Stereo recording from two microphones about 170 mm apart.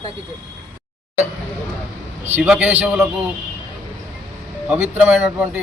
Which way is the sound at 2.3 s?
10° right (ahead or behind).